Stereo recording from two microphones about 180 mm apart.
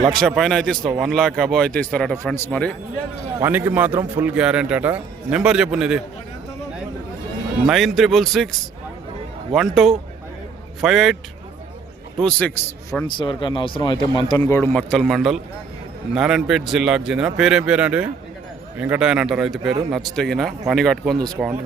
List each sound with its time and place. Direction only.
0.2 s a man's voice: centre (ahead or behind)
3.4 s a man's voice: 10° right (ahead or behind)
7.7 s a man's voice: centre (ahead or behind)
9.6 s a man's voice: centre (ahead or behind)
12.2 s a man's voice: 5° left (ahead or behind)
13.1 s speech: 25° left (ahead or behind)
14.4 s a man's voice: 10° left (ahead or behind); by 21.5 s 5° right (ahead or behind)